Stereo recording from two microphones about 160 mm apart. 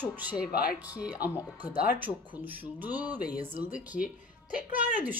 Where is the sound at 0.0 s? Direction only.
10° right (ahead or behind).